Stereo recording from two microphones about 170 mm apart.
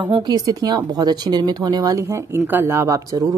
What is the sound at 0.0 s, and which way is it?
Speech, 25° right (ahead or behind).